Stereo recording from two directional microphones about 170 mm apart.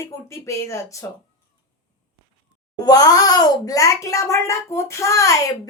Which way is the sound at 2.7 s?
20° left (ahead or behind).